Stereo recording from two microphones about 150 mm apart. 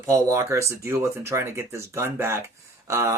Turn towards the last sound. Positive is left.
turn(degrees=-20)  # may be behind; listen again after turning